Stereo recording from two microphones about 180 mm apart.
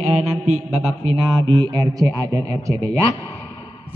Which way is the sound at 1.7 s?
20° right (ahead or behind).